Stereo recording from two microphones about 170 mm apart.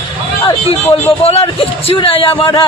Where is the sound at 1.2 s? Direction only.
35° left (ahead or behind).